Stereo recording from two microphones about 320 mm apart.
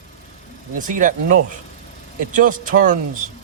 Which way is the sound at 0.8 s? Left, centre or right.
Right.